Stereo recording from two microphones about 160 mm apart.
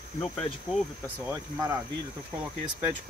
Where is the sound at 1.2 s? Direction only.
15° right (ahead or behind).